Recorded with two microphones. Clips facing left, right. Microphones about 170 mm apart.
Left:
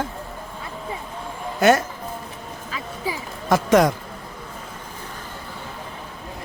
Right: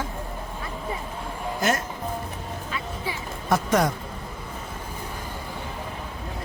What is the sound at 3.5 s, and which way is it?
Speech, 90° left.